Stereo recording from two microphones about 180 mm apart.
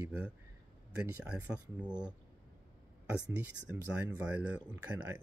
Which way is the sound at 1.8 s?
25° right (ahead or behind).